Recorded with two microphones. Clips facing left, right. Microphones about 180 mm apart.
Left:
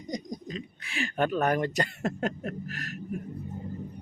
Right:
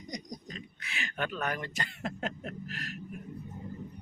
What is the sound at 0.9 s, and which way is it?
Speech, 35° left (ahead or behind).